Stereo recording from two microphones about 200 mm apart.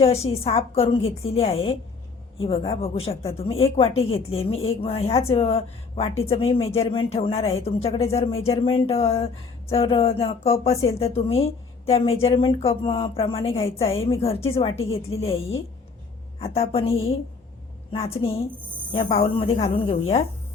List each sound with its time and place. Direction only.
0.0 s a woman's voice: 30° left (ahead or behind)
16.4 s a woman's voice: 30° left (ahead or behind)